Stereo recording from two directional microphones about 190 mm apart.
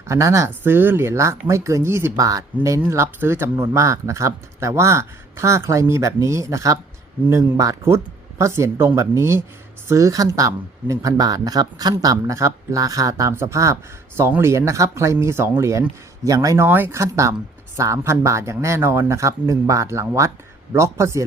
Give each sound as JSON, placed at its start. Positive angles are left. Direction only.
{"t": 0.1, "sound": "speech", "side_deg": -15}